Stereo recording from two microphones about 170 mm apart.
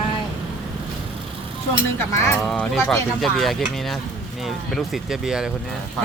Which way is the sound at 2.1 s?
15° left (ahead or behind).